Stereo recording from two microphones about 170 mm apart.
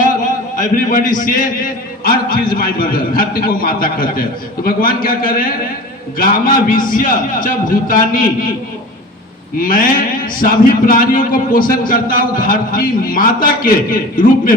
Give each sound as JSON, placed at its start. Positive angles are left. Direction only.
{"t": 0.5, "sound": "a man's voice", "side_deg": 50}
{"t": 9.6, "sound": "a man's voice", "side_deg": 55}